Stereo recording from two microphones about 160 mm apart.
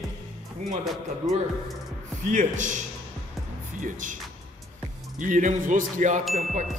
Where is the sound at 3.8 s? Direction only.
55° right (ahead or behind).